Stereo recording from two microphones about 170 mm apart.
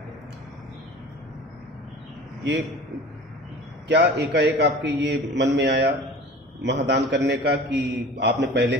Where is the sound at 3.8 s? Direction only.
90° right.